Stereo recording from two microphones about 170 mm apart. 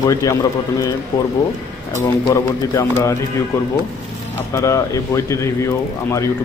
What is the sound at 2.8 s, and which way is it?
Speech, 15° left (ahead or behind).